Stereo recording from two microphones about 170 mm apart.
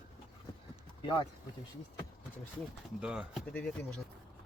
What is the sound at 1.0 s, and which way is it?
Speech, 30° left (ahead or behind).